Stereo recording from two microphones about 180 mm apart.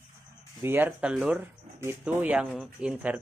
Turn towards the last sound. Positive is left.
turn(degrees=-10)  # may be behind; listen again after turning